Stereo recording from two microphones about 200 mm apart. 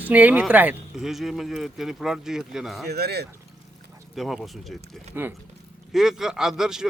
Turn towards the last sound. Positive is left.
turn(degrees=-5)  # may be behind; listen again after turning